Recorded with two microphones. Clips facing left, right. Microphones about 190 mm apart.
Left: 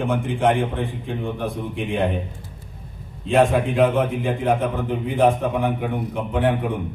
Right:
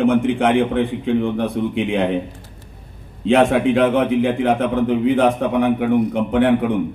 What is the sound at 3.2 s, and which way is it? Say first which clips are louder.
A man's voice: right 3 dB; 80° right.